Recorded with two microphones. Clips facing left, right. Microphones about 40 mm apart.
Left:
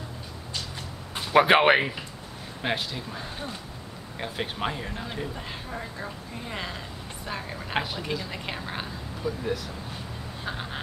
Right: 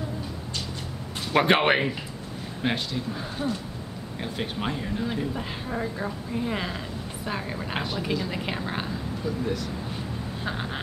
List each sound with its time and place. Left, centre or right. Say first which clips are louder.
1.3 s a woman's voice: left 2 dB; centre
5.3 s a woman's voice: right 5 dB; centre
10.4 s a woman's voice: right 2 dB; centre